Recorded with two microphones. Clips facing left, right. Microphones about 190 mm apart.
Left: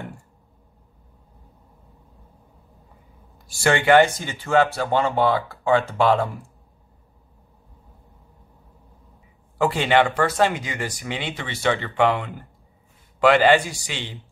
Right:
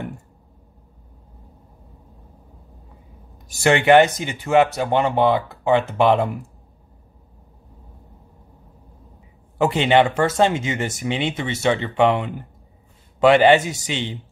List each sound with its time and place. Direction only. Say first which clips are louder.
3.4 s speech: right 3 dB; 20° right (ahead or behind)
9.6 s speech: right 3 dB; 20° right (ahead or behind)